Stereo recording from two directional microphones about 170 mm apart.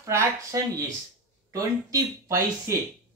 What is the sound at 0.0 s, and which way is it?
Speech, 20° right (ahead or behind).